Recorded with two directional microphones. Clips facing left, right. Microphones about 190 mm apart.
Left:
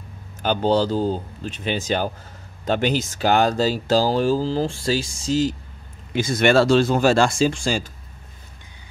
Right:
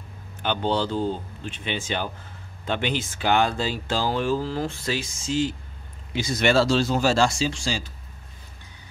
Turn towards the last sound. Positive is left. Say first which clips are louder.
# left 6 dB
turn(degrees=50)  # may be behind; listen again after turning